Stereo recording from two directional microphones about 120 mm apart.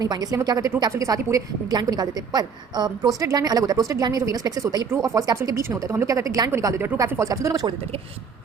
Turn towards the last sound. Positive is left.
turn(degrees=-25)  # may be behind; listen again after turning